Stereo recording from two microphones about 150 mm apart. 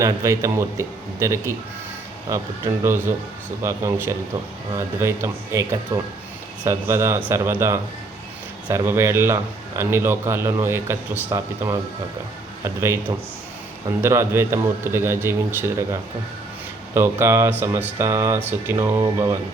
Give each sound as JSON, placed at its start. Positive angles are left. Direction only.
{"t": 0.0, "sound": "speech", "side_deg": -20}
{"t": 3.6, "sound": "a man's voice", "side_deg": -20}
{"t": 16.9, "sound": "a man's voice", "side_deg": -15}